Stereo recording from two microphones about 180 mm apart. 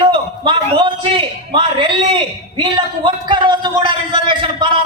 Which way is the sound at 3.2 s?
25° right (ahead or behind).